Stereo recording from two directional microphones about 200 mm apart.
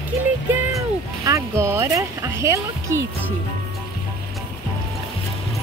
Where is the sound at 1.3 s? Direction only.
15° right (ahead or behind).